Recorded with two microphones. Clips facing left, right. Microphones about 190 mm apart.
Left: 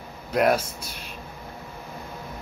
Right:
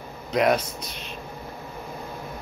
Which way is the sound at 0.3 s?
5° left (ahead or behind).